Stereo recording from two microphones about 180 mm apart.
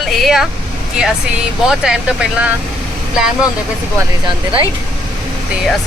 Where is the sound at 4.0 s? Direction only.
25° right (ahead or behind).